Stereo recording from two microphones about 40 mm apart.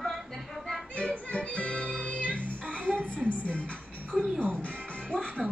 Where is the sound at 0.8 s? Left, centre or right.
Left.